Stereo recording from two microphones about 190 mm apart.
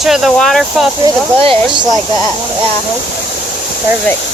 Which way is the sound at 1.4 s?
30° right (ahead or behind).